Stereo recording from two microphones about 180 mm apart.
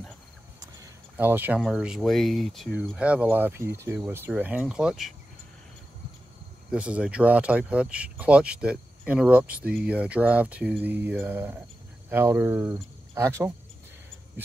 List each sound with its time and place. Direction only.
1.1 s speech: 10° right (ahead or behind)
6.7 s speech: 5° right (ahead or behind)